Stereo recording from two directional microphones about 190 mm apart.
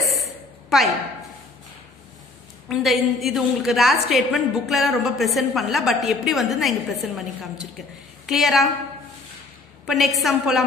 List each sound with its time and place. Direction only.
0.0 s a sound: centre (ahead or behind)
2.7 s a woman's voice: centre (ahead or behind)
8.3 s a woman's voice: centre (ahead or behind)
9.8 s a woman's voice: centre (ahead or behind)